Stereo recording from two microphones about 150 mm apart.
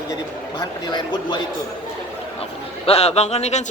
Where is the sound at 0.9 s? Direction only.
30° left (ahead or behind).